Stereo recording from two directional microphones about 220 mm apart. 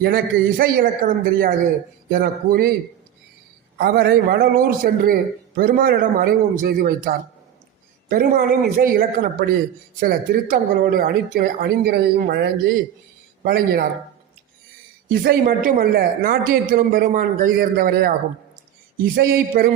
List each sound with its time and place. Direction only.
0.0 s a man's voice: 40° right (ahead or behind)
3.8 s a man's voice: 45° right (ahead or behind)
15.2 s a man's voice: 45° right (ahead or behind)
19.1 s speech: 45° right (ahead or behind)